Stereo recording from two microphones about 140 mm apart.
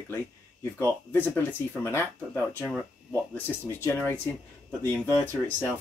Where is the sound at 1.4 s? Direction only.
15° left (ahead or behind).